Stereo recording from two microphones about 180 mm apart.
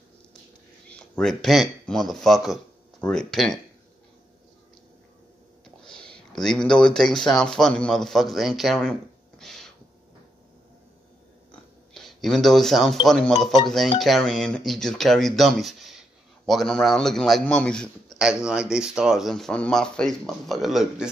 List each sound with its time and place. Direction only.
0.8 s speech: 5° left (ahead or behind)
5.9 s a man's voice: 5° left (ahead or behind)
9.4 s owl: centre (ahead or behind)
11.9 s a man's voice: centre (ahead or behind)